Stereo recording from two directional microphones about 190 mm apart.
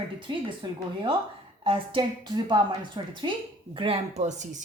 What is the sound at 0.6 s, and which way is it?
A woman's voice, 25° right (ahead or behind).